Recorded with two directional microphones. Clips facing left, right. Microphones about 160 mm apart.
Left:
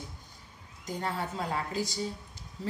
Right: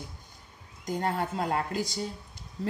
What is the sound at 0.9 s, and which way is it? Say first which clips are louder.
Speech: right 4 dB; 50° right (ahead or behind).